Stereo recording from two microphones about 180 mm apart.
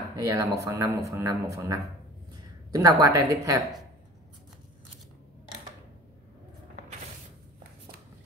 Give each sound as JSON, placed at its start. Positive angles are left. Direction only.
{"t": 0.1, "sound": "a woman's voice", "side_deg": -20}